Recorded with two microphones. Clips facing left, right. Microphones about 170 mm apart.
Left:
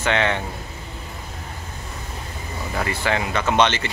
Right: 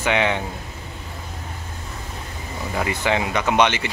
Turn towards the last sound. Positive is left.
turn(degrees=-15)  # may be behind; listen again after turning